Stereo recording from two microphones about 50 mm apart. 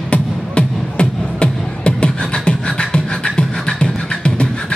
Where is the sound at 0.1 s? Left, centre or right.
Left.